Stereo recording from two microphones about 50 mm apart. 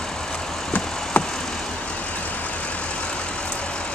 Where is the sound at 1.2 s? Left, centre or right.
Left.